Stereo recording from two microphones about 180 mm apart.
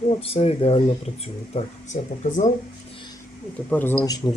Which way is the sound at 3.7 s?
10° left (ahead or behind).